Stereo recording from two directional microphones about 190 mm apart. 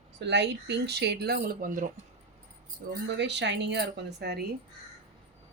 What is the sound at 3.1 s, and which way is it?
Speech, 65° right (ahead or behind).